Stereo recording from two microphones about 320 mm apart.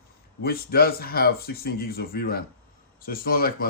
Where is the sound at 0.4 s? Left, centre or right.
Left.